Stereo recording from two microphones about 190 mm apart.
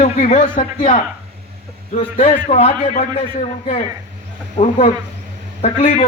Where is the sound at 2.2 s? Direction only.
35° left (ahead or behind).